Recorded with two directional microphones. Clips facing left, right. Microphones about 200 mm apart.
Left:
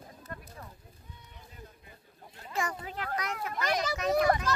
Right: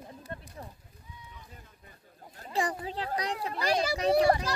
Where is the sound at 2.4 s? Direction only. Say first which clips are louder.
Right 3 dB; 35° right (ahead or behind).